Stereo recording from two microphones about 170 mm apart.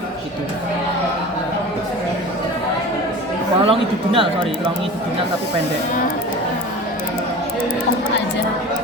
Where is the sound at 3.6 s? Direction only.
30° right (ahead or behind).